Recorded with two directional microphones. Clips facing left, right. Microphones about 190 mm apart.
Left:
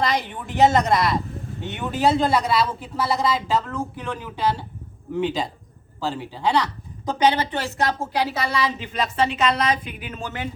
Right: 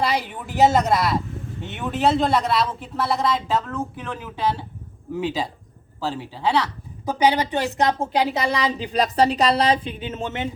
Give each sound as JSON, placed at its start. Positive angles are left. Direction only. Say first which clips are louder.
{"t": 0.0, "sound": "a woman's voice", "louder": "even", "side_deg": -10}
{"t": 8.6, "sound": "a woman's voice", "louder": "right 3 dB", "side_deg": -35}